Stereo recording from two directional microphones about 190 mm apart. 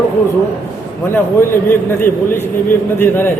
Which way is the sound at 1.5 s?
10° left (ahead or behind).